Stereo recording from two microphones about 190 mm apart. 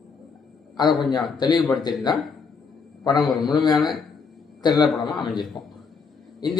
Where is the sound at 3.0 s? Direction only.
20° left (ahead or behind).